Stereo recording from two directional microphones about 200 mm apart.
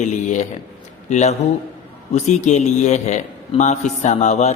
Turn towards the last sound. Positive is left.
turn(degrees=35)  # may be behind; listen again after turning